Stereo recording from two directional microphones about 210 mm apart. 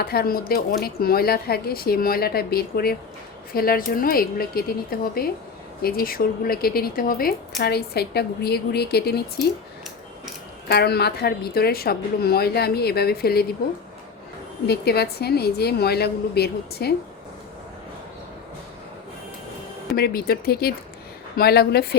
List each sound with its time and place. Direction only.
0.0 s speech: 45° left (ahead or behind)
10.7 s speech: 50° left (ahead or behind)
14.7 s speech: 50° left (ahead or behind)
20.0 s speech: 45° left (ahead or behind)